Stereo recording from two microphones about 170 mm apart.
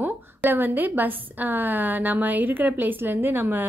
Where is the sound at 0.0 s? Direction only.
10° right (ahead or behind).